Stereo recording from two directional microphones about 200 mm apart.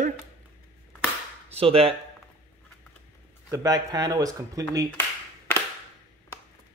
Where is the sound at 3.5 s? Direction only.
20° right (ahead or behind).